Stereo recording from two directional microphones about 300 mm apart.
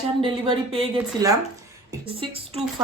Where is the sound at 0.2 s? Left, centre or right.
Centre.